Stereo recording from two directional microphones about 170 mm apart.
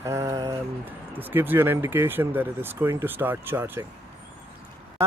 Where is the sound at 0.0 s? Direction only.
15° right (ahead or behind).